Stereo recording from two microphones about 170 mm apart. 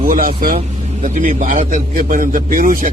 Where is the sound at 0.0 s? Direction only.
55° right (ahead or behind).